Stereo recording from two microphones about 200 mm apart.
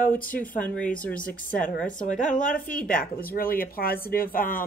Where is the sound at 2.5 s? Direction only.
5° left (ahead or behind).